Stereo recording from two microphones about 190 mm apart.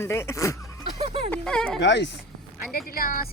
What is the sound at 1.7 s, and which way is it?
Speech, 65° left (ahead or behind).